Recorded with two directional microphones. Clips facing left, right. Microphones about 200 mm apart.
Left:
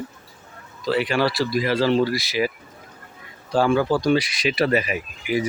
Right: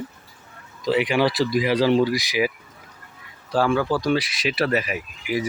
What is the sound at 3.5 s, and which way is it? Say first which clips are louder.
Speech: left 2 dB; centre (ahead or behind).